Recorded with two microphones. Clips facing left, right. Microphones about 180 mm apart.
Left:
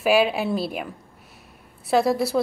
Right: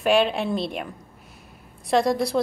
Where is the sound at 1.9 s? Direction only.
5° left (ahead or behind).